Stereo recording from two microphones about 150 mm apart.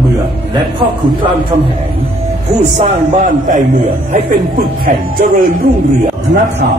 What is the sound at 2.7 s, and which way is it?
A man's voice, 55° right (ahead or behind).